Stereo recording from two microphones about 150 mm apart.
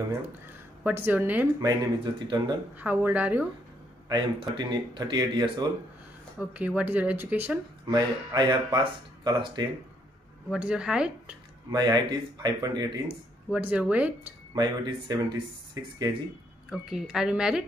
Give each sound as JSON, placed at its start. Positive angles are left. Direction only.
{"t": 0.5, "sound": "a woman's voice", "side_deg": -15}
{"t": 1.6, "sound": "speech", "side_deg": -30}
{"t": 2.8, "sound": "speech", "side_deg": -10}
{"t": 4.1, "sound": "speech", "side_deg": -30}
{"t": 6.3, "sound": "speech", "side_deg": -10}
{"t": 7.9, "sound": "speech", "side_deg": -25}
{"t": 10.5, "sound": "speech", "side_deg": -5}
{"t": 11.7, "sound": "speech", "side_deg": -30}
{"t": 13.5, "sound": "speech", "side_deg": -10}
{"t": 14.5, "sound": "speech", "side_deg": -30}
{"t": 16.7, "sound": "a woman's voice", "side_deg": -5}